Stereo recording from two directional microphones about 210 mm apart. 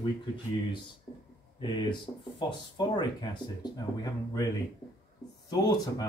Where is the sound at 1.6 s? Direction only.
20° left (ahead or behind).